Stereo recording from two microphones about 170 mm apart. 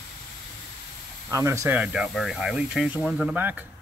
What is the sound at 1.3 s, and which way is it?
Speech, 15° right (ahead or behind).